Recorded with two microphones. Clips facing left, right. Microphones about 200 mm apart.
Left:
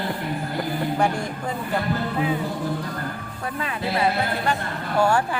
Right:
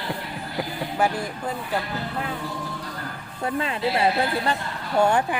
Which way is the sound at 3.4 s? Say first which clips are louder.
Right 3 dB; 25° right (ahead or behind).